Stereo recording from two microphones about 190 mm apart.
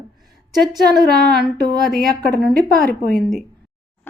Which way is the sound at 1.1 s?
55° right (ahead or behind).